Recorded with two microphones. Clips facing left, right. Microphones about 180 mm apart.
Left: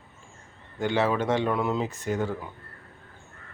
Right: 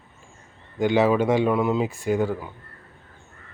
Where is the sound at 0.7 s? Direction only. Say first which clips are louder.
Right 6 dB; 15° right (ahead or behind).